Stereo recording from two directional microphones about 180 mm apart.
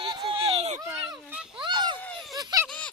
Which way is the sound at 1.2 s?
5° right (ahead or behind).